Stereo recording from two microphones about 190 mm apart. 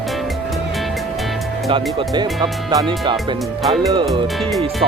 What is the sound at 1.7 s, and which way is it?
Speech, 25° right (ahead or behind).